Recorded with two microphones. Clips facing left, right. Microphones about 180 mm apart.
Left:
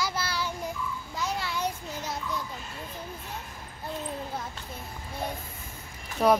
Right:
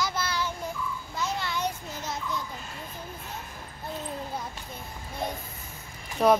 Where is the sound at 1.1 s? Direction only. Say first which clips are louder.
Right 1 dB; 10° left (ahead or behind).